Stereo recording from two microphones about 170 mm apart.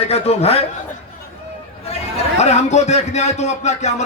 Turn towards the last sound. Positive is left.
turn(degrees=40)  # may be behind; listen again after turning